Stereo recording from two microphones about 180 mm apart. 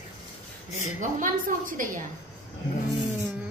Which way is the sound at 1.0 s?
50° right (ahead or behind).